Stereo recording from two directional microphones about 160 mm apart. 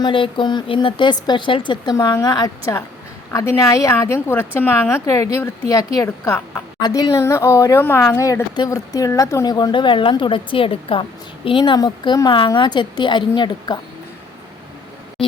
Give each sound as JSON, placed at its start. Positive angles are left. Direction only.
{"t": 0.0, "sound": "a woman's voice", "side_deg": 30}
{"t": 6.7, "sound": "speech", "side_deg": 25}